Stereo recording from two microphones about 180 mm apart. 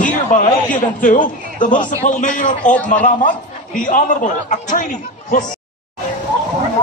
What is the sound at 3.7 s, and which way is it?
A man's voice, 45° left (ahead or behind).